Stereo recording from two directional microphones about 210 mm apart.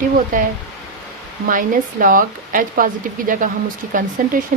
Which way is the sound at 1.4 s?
40° right (ahead or behind).